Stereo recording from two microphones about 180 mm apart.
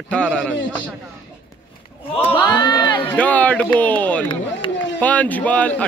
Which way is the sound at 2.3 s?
25° left (ahead or behind).